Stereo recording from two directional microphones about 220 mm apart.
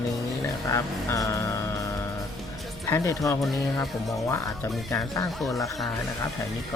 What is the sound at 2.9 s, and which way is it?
Speech, 15° left (ahead or behind).